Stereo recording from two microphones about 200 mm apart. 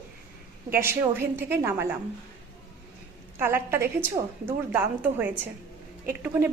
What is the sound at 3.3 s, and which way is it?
Speech, 10° right (ahead or behind).